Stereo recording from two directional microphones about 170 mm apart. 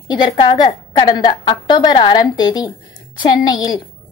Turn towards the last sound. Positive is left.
turn(degrees=25)  # may be behind; listen again after turning